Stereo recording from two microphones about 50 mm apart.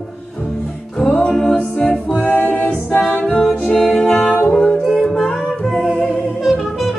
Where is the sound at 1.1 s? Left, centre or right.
Left.